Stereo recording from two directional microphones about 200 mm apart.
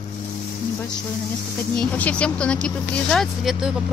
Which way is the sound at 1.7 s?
5° left (ahead or behind).